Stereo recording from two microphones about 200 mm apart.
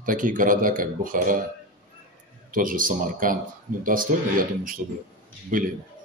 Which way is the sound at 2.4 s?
45° right (ahead or behind).